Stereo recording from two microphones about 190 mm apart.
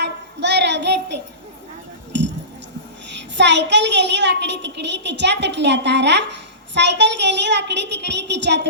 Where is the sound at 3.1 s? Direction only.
70° right (ahead or behind).